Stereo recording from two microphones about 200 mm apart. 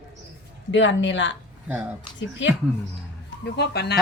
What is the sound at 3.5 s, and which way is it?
Speech, 55° left (ahead or behind).